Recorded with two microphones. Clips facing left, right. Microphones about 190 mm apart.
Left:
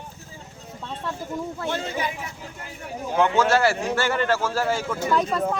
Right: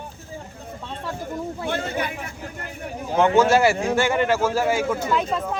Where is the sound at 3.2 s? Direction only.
10° right (ahead or behind).